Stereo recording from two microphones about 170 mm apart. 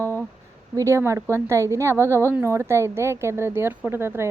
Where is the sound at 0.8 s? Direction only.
15° right (ahead or behind).